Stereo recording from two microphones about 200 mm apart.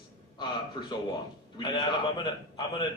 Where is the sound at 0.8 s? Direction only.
20° left (ahead or behind).